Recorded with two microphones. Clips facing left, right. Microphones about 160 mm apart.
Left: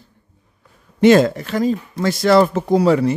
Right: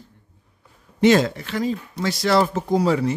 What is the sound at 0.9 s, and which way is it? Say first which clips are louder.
Speech: left 5 dB; 50° left (ahead or behind).